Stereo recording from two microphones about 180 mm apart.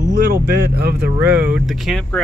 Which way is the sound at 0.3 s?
65° right (ahead or behind).